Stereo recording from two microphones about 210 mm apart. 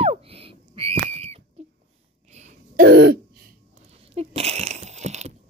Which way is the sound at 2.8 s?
50° right (ahead or behind).